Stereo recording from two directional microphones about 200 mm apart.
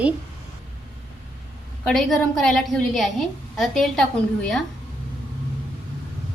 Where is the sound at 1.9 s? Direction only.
Centre (ahead or behind).